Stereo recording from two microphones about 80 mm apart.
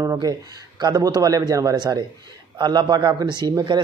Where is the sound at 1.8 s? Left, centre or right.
Right.